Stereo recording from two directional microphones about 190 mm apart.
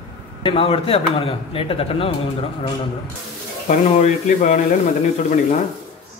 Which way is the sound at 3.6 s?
40° left (ahead or behind).